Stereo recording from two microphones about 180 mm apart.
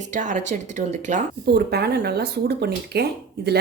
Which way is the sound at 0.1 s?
45° right (ahead or behind).